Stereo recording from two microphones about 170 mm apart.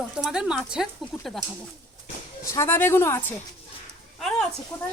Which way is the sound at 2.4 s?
15° left (ahead or behind).